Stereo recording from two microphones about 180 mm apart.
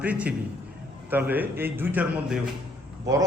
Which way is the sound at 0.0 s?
10° right (ahead or behind).